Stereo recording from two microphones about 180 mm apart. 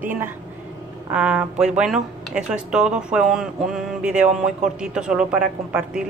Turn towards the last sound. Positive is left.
turn(degrees=-5)  # may be behind; listen again after turning